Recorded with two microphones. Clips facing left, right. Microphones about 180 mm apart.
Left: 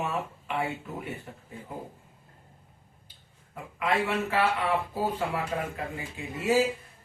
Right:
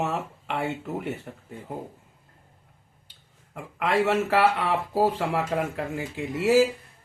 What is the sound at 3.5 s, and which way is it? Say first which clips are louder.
Speech: right 4 dB; 85° right.